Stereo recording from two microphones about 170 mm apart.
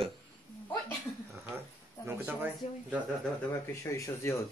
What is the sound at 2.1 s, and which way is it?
Speech, 10° right (ahead or behind).